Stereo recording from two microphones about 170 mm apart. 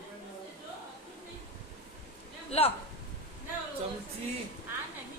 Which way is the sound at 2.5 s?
35° left (ahead or behind).